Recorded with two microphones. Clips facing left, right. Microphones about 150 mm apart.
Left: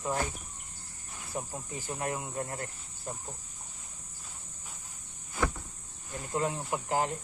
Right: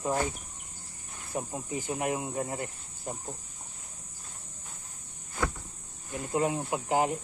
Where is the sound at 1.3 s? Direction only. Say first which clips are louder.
Right 4 dB; 20° right (ahead or behind).